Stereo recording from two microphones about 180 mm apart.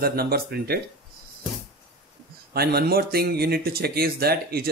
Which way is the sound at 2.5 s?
60° right (ahead or behind).